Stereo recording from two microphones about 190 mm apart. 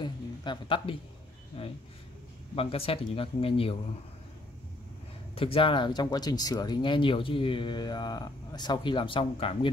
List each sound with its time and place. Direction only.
0.0 s a sound: 25° left (ahead or behind)
1.6 s speech: 30° left (ahead or behind)
5.3 s speech: 30° left (ahead or behind)